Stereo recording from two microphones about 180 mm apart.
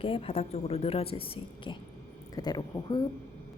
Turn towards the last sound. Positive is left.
turn(degrees=20)  # may be behind; listen again after turning